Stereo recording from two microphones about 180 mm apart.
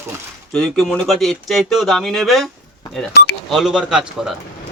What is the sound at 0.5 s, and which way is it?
Speech, centre (ahead or behind).